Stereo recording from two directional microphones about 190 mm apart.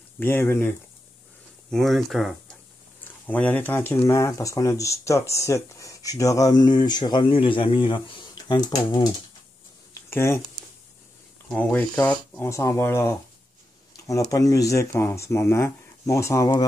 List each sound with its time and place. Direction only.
0.2 s speech: 10° left (ahead or behind)
1.7 s speech: centre (ahead or behind)
11.4 s speech: 10° left (ahead or behind)
14.3 s speech: 15° left (ahead or behind)